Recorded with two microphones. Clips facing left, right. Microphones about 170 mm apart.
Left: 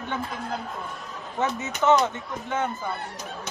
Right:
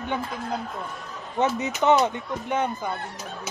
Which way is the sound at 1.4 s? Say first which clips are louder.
Right 3 dB; 20° right (ahead or behind).